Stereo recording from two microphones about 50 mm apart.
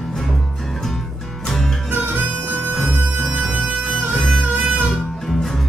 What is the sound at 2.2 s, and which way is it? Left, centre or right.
Harmonica, right.